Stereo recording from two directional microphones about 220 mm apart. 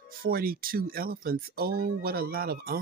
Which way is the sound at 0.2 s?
40° right (ahead or behind).